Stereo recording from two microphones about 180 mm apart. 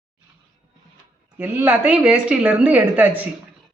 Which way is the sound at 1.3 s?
10° right (ahead or behind).